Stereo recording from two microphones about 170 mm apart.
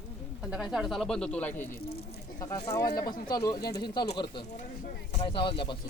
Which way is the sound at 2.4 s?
20° left (ahead or behind).